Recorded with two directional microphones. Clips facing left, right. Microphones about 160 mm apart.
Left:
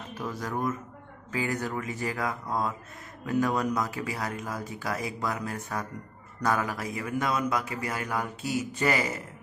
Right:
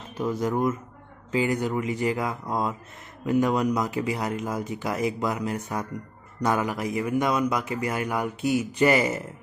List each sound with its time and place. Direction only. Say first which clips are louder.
0.2 s speech: right 7 dB; 20° right (ahead or behind)